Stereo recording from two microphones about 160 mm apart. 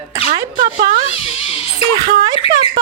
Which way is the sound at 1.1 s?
40° left (ahead or behind).